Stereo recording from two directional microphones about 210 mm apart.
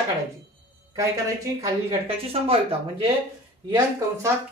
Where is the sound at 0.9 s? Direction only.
15° right (ahead or behind).